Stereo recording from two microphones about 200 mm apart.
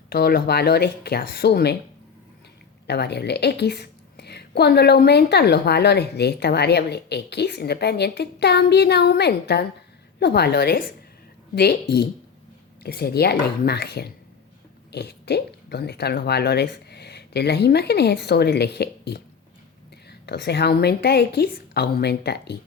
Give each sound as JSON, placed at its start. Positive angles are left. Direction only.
{"t": 0.1, "sound": "speech", "side_deg": 50}
{"t": 2.8, "sound": "a woman's voice", "side_deg": 55}